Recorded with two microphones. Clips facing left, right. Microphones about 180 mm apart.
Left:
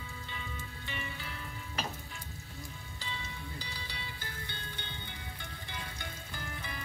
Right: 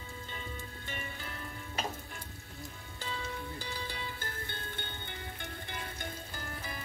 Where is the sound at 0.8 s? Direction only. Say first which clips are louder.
Left 1 dB; 45° right (ahead or behind).